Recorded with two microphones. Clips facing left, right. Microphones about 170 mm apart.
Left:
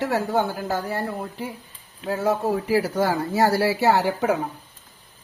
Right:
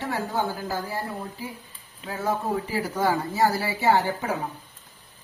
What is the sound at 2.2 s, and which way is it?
A man's voice, 80° left.